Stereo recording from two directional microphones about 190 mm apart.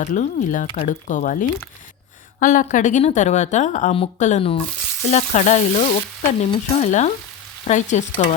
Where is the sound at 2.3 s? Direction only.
45° left (ahead or behind).